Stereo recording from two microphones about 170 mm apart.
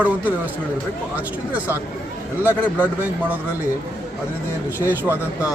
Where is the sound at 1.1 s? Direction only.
10° right (ahead or behind).